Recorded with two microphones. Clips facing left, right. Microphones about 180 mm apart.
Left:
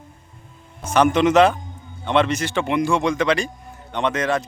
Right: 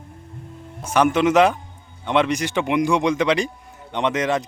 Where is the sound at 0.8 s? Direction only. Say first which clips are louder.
Left 1 dB; 5° right (ahead or behind).